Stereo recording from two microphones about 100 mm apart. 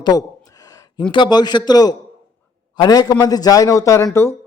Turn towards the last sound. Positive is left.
turn(degrees=30)  # may be behind; listen again after turning